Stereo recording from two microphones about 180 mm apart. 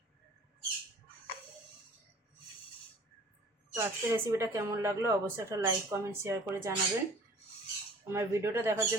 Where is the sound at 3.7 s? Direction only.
15° right (ahead or behind).